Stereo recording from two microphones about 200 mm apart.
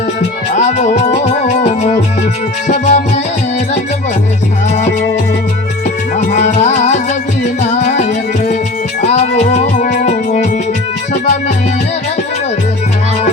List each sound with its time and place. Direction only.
0.2 s music: 35° left (ahead or behind)
4.7 s music: 35° left (ahead or behind)
6.1 s music: 35° left (ahead or behind)